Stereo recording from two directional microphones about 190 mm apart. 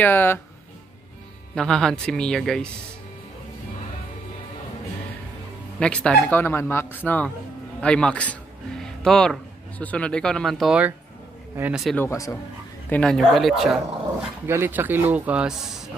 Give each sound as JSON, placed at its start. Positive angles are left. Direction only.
{"t": 0.0, "sound": "speech", "side_deg": 10}
{"t": 1.5, "sound": "speech", "side_deg": 5}
{"t": 5.8, "sound": "speech", "side_deg": 5}
{"t": 12.0, "sound": "speech", "side_deg": 15}
{"t": 12.9, "sound": "speech", "side_deg": 5}
{"t": 14.4, "sound": "a man's voice", "side_deg": -10}